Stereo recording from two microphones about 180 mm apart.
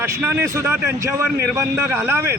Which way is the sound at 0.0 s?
10° right (ahead or behind).